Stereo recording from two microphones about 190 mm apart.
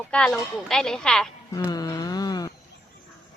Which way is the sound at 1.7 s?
20° left (ahead or behind).